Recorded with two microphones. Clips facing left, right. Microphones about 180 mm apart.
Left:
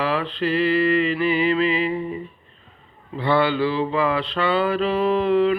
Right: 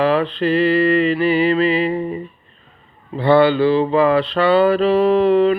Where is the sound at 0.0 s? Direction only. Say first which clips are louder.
Right 6 dB; 35° right (ahead or behind).